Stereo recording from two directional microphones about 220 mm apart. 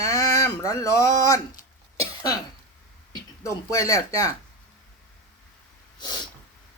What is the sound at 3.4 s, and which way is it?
Speech, 15° left (ahead or behind).